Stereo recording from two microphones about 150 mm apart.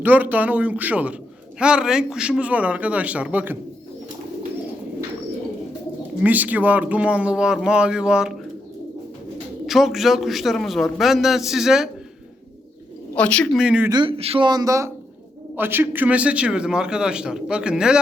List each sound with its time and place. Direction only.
0.0 s a man's voice: 10° right (ahead or behind)
6.2 s a man's voice: 10° right (ahead or behind)
9.6 s a man's voice: centre (ahead or behind)
13.1 s speech: 10° left (ahead or behind)
13.6 s a man's voice: 10° right (ahead or behind)
13.9 s speech: 35° right (ahead or behind)
14.4 s a man's voice: 25° right (ahead or behind); by 18.0 s 5° right (ahead or behind)